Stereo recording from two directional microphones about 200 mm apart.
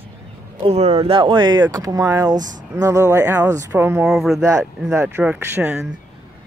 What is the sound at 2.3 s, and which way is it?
Speech, 40° right (ahead or behind).